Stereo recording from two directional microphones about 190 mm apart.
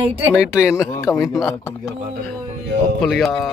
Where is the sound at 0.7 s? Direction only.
15° left (ahead or behind).